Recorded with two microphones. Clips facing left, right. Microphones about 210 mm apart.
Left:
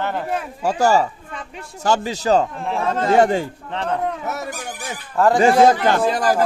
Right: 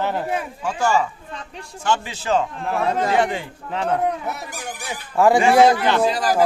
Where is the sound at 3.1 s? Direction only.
40° left (ahead or behind).